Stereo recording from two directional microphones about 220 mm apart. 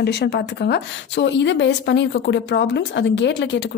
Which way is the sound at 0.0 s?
50° left (ahead or behind).